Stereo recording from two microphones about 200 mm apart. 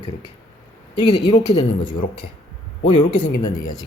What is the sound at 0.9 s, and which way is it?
Speech, 25° left (ahead or behind).